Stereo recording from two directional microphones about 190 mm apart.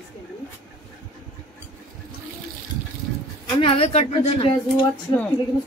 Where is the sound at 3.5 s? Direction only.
30° left (ahead or behind).